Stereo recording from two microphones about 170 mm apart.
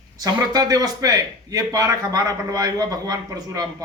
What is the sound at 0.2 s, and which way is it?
A man's voice, 20° right (ahead or behind).